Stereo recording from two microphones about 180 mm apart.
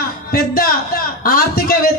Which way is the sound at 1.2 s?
55° left (ahead or behind).